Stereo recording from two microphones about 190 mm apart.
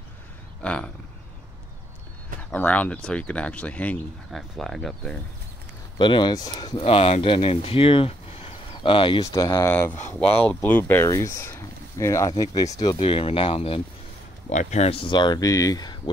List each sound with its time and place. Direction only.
0.6 s a sound: 5° left (ahead or behind)
2.5 s speech: 10° left (ahead or behind)
5.9 s speech: 25° left (ahead or behind)